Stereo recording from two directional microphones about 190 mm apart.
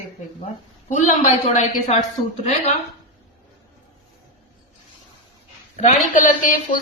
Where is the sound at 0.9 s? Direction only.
40° left (ahead or behind).